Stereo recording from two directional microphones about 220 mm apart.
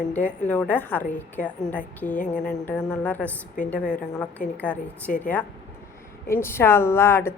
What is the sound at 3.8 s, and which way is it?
Speech, 35° left (ahead or behind).